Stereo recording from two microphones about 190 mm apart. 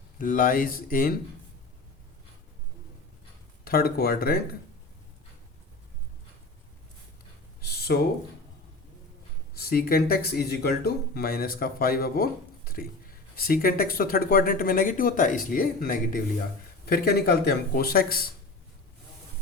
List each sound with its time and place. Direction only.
0.2 s speech: 45° left (ahead or behind)
3.6 s speech: 50° left (ahead or behind)
7.6 s a sound: 55° left (ahead or behind)
9.6 s speech: 50° left (ahead or behind)